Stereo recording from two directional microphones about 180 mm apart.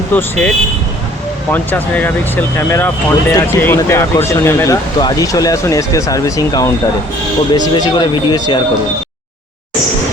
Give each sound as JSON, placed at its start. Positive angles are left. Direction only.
{"t": 0.1, "sound": "speech", "side_deg": 10}